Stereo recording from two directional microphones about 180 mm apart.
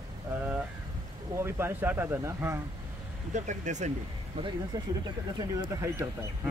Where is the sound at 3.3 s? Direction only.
45° right (ahead or behind).